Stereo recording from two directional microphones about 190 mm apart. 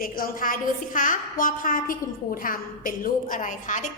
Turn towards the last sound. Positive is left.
turn(degrees=40)  # may be behind; listen again after turning